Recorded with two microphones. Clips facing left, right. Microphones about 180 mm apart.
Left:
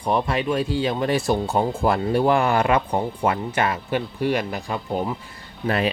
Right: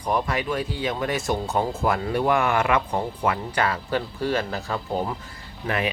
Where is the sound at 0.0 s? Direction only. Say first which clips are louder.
Left 3 dB; 25° left (ahead or behind).